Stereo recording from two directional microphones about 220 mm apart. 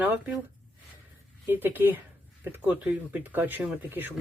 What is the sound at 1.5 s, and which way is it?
Speech, 10° right (ahead or behind).